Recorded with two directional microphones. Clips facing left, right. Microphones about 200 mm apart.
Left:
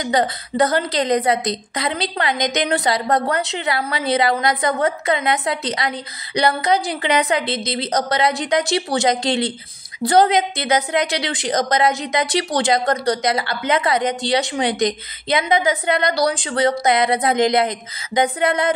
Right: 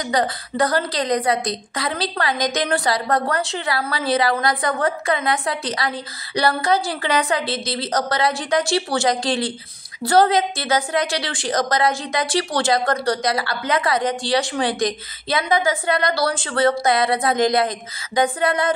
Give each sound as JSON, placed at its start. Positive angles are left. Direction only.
{"t": 0.1, "sound": "a woman's voice", "side_deg": 25}